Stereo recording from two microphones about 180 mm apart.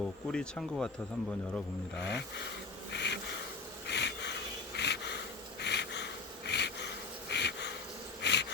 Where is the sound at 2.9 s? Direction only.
75° left (ahead or behind).